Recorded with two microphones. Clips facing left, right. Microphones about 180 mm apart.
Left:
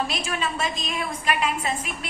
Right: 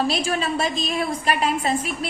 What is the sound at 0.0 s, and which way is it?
A woman's voice, 35° right (ahead or behind).